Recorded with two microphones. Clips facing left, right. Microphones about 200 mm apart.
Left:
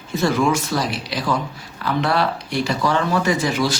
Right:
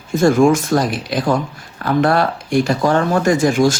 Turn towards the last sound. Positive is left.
turn(degrees=-50)  # may be behind; listen again after turning